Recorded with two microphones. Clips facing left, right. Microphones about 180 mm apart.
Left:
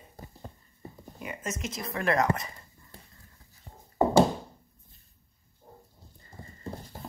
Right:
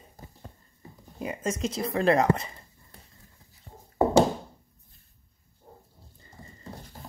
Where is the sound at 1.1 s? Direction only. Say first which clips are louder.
Right 6 dB; 30° right (ahead or behind).